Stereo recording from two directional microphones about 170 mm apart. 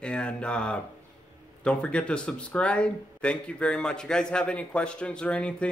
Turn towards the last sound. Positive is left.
turn(degrees=5)  # may be behind; listen again after turning